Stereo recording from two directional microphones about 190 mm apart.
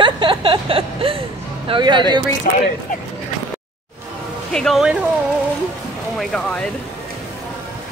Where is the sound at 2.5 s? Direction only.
45° left (ahead or behind).